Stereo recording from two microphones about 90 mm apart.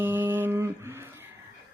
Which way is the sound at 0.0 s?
25° right (ahead or behind).